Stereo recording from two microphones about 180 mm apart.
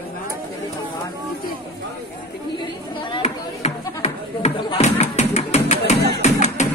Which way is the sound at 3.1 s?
30° left (ahead or behind).